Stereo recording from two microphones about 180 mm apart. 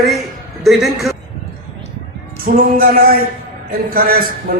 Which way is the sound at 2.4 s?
55° right (ahead or behind).